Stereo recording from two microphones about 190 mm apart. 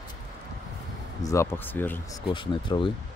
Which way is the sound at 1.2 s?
15° left (ahead or behind).